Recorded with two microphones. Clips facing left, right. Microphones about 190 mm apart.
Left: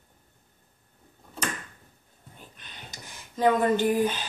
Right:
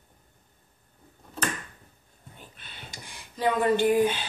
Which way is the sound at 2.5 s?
40° left (ahead or behind).